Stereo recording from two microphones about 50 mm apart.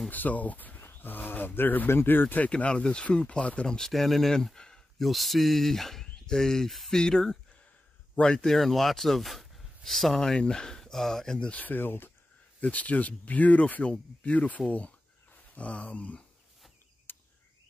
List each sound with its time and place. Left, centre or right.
0.1 s speech: left
2.5 s speech: left
3.6 s speech: centre
5.0 s speech: centre
6.7 s speech: centre
7.0 s speech: centre
8.5 s speech: centre
11.5 s speech: left
12.7 s speech: left
14.7 s a sound: left
17.1 s a sound: left